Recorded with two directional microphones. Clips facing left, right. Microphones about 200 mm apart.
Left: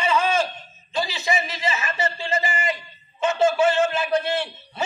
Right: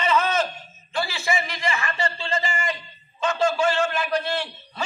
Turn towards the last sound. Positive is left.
turn(degrees=20)  # may be behind; listen again after turning